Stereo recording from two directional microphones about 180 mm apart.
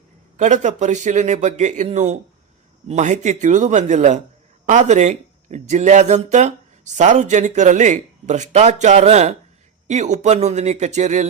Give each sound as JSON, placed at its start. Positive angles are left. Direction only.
{"t": 0.3, "sound": "speech", "side_deg": -40}